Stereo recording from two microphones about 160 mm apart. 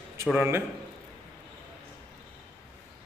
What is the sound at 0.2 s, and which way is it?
Speech, 15° right (ahead or behind).